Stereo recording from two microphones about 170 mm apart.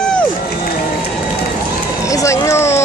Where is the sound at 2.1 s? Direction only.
20° left (ahead or behind).